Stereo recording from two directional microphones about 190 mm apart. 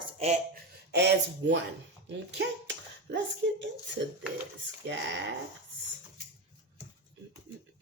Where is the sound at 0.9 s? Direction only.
65° right (ahead or behind).